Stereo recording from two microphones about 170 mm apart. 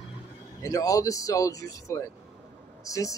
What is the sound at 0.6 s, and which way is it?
Speech, 20° left (ahead or behind).